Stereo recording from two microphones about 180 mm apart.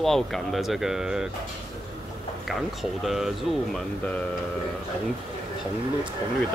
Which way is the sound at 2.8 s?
Centre (ahead or behind).